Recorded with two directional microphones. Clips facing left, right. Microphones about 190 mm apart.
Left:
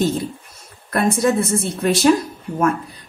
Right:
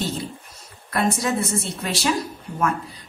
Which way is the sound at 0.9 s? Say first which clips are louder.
Left 5 dB; 50° left (ahead or behind).